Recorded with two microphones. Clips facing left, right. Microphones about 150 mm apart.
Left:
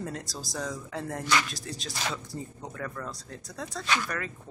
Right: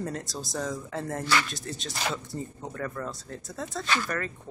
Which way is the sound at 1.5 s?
Centre (ahead or behind).